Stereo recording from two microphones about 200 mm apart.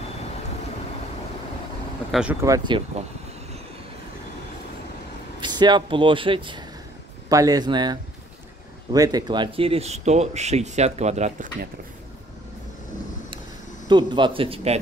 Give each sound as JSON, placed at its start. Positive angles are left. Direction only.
{"t": 2.0, "sound": "speech", "side_deg": -5}
{"t": 2.4, "sound": "speech", "side_deg": -20}
{"t": 5.4, "sound": "speech", "side_deg": -20}
{"t": 13.8, "sound": "speech", "side_deg": -20}